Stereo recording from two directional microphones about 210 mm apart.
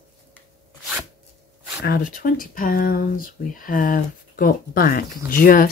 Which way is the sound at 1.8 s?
45° left (ahead or behind).